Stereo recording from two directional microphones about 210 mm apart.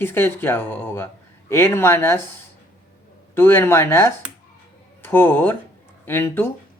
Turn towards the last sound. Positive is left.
turn(degrees=10)  # may be behind; listen again after turning